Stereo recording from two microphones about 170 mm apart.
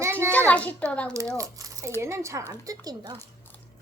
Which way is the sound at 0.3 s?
10° left (ahead or behind).